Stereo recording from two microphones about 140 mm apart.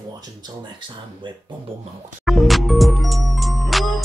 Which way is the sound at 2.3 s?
Centre (ahead or behind).